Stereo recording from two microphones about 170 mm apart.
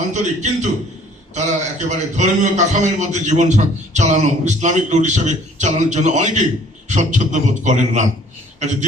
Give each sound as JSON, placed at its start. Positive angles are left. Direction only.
{"t": 0.1, "sound": "a man's voice", "side_deg": -45}